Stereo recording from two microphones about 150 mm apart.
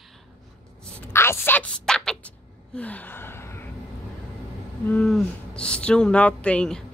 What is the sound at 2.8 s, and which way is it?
Gasp, 10° left (ahead or behind).